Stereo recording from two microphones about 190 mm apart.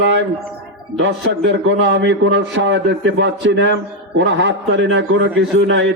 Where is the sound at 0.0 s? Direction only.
70° right (ahead or behind).